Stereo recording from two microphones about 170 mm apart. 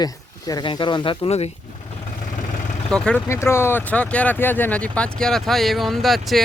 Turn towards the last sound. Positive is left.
turn(degrees=0)  # may be behind; listen again after turning